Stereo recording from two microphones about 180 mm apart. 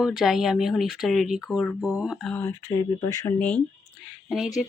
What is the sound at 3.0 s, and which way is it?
Speech, 20° left (ahead or behind).